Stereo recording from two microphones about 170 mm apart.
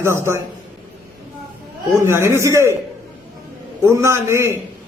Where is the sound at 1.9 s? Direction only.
15° right (ahead or behind).